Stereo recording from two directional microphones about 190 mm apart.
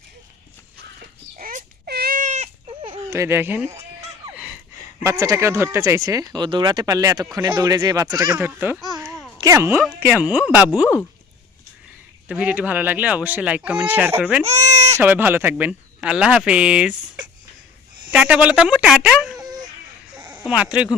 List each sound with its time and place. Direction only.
1.4 s a sound: 45° right (ahead or behind)
2.9 s speech: 15° right (ahead or behind)
4.4 s a sound: 5° right (ahead or behind)
5.0 s speech: 15° right (ahead or behind)
9.0 s a sound: 15° right (ahead or behind)
9.4 s speech: 15° right (ahead or behind)
12.3 s speech: 5° right (ahead or behind)
14.4 s bleat: 35° right (ahead or behind)
14.9 s speech: 10° right (ahead or behind)